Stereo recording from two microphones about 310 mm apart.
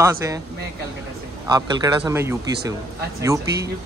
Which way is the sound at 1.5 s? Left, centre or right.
Centre.